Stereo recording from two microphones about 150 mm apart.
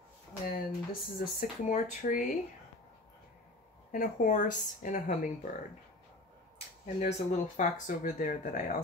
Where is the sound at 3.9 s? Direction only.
65° left (ahead or behind).